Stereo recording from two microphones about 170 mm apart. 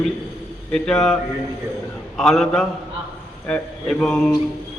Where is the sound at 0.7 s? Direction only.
5° left (ahead or behind).